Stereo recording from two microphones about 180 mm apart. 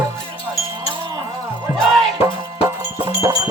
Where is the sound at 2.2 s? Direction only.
15° right (ahead or behind).